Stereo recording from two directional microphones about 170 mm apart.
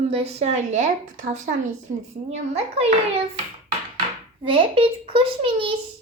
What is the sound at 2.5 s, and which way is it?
Speech, 35° right (ahead or behind).